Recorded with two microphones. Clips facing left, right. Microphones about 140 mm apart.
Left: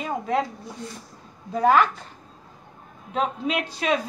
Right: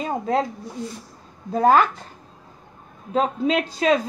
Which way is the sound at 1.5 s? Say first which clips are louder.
Right 2 dB; 35° right (ahead or behind).